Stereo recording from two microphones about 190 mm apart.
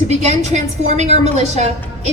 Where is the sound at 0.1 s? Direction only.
35° right (ahead or behind).